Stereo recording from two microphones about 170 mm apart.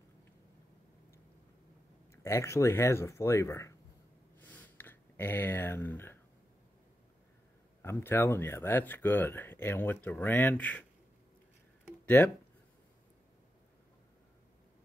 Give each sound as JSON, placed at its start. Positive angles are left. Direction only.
{"t": 2.2, "sound": "speech", "side_deg": 15}
{"t": 4.4, "sound": "a sound", "side_deg": 10}
{"t": 7.8, "sound": "speech", "side_deg": 15}